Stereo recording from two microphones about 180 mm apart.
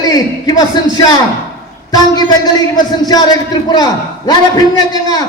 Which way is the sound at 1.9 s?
20° left (ahead or behind).